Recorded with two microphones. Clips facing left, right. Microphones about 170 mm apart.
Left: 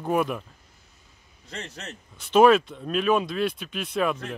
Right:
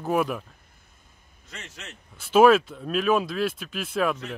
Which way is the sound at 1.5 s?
35° left (ahead or behind).